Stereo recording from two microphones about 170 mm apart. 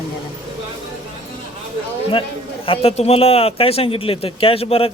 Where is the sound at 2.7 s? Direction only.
35° left (ahead or behind).